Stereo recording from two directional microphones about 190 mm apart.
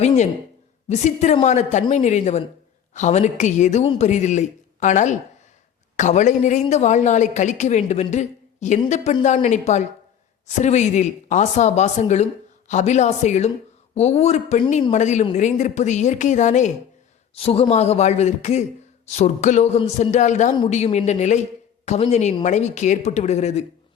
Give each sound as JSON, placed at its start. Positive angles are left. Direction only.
{"t": 0.0, "sound": "speech", "side_deg": 35}